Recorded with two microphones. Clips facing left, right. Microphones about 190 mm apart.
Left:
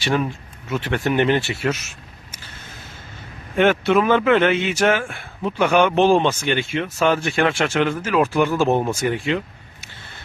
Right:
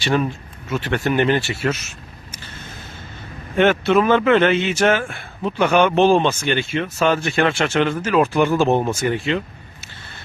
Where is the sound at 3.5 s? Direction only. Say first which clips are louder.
Right 1 dB; 10° left (ahead or behind).